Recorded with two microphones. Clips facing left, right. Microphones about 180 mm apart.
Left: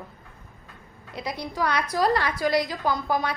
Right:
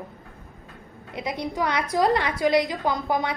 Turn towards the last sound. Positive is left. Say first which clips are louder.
# right 1 dB
turn(degrees=-20)  # may be behind; listen again after turning